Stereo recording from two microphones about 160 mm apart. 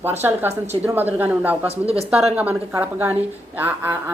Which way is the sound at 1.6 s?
40° right (ahead or behind).